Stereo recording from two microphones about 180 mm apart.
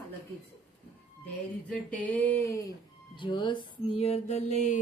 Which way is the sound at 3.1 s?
25° left (ahead or behind).